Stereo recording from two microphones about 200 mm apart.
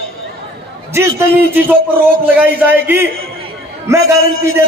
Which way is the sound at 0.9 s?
10° right (ahead or behind).